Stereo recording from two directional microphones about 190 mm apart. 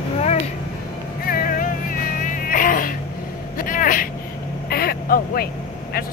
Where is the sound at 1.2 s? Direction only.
50° left (ahead or behind).